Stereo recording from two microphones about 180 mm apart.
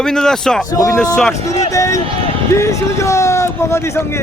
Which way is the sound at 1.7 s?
20° left (ahead or behind).